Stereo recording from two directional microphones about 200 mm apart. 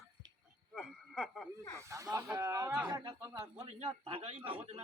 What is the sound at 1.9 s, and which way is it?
Speech, 15° right (ahead or behind).